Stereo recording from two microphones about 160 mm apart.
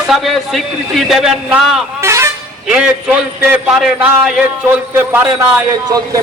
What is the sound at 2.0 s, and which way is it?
Vehicle horn, 15° right (ahead or behind).